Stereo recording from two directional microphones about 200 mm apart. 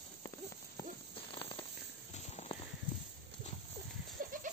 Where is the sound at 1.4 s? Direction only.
25° left (ahead or behind).